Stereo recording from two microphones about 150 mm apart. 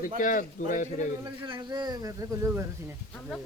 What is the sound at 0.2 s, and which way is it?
Speech, 65° left (ahead or behind).